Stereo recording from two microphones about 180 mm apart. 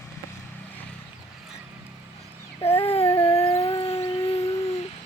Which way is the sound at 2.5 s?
35° left (ahead or behind).